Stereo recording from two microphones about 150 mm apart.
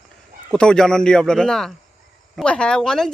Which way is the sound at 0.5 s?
5° left (ahead or behind).